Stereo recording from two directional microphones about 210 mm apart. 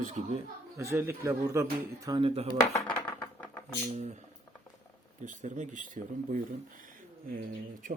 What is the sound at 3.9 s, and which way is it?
Speech, 35° right (ahead or behind).